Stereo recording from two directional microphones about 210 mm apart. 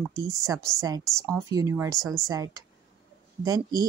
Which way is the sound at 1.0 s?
Centre (ahead or behind).